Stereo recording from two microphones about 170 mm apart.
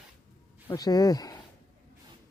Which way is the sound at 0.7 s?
20° left (ahead or behind).